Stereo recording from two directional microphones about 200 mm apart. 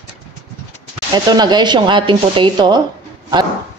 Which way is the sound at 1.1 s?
20° right (ahead or behind).